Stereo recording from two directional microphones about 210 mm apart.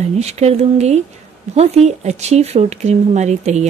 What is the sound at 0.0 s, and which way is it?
Speech, 30° right (ahead or behind).